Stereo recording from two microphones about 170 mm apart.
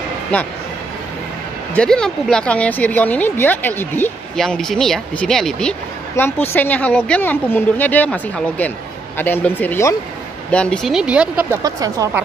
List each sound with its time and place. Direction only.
0.3 s a woman's voice: 10° left (ahead or behind)
1.8 s a woman's voice: 5° left (ahead or behind)
11.6 s a woman's voice: 20° right (ahead or behind)